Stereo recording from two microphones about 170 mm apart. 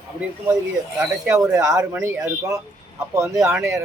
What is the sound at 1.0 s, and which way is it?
Speech, 15° right (ahead or behind).